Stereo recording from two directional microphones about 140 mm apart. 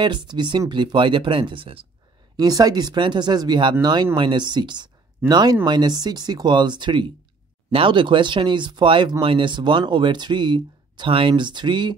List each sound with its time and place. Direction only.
0.0 s speech: 35° right (ahead or behind)
2.3 s speech: 30° right (ahead or behind)